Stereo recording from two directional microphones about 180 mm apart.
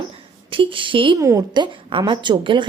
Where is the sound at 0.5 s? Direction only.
30° right (ahead or behind).